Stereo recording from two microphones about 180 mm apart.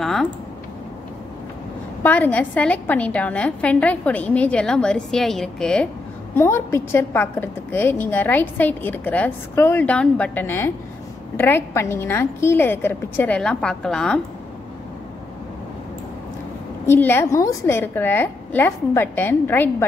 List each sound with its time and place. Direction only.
0.0 s typing: centre (ahead or behind)
2.0 s a woman's voice: 10° left (ahead or behind)
16.8 s a woman's voice: 10° left (ahead or behind)